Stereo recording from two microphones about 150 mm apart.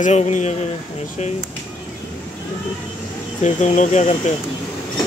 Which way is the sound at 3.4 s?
50° left (ahead or behind).